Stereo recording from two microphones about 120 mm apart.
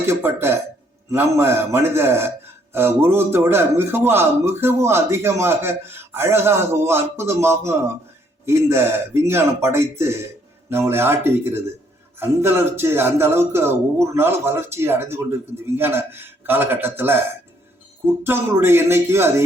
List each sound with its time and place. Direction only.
0.1 s a man's voice: 20° right (ahead or behind)
18.2 s a man's voice: 20° right (ahead or behind)